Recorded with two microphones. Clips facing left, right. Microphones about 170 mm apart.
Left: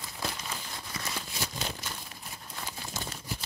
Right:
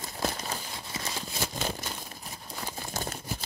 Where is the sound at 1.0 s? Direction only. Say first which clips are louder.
Right 2 dB; 25° right (ahead or behind).